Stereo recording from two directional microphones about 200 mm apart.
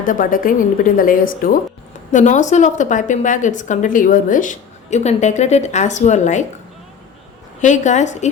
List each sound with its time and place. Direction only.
0.0 s a woman's voice: 45° left (ahead or behind)
7.6 s a woman's voice: 35° left (ahead or behind)